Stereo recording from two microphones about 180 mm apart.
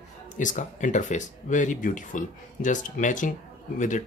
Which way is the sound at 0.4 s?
45° left (ahead or behind).